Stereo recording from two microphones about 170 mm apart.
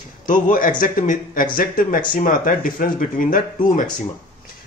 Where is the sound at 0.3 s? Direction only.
50° left (ahead or behind).